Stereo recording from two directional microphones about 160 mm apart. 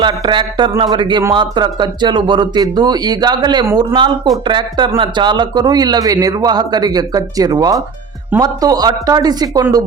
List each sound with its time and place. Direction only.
0.0 s a man's voice: 30° right (ahead or behind)